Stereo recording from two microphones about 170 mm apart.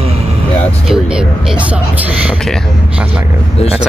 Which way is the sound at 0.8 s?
5° right (ahead or behind).